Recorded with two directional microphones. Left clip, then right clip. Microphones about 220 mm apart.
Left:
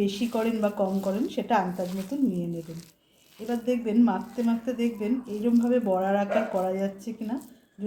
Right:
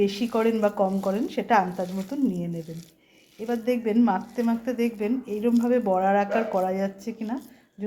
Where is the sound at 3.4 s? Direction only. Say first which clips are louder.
Right 3 dB; 15° right (ahead or behind).